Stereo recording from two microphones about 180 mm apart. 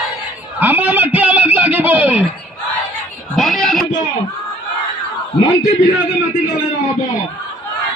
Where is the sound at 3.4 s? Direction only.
Centre (ahead or behind).